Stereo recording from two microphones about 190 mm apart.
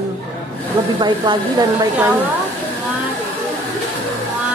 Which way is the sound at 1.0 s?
25° right (ahead or behind).